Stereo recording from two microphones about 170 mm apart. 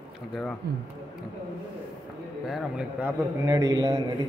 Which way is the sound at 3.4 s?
20° right (ahead or behind).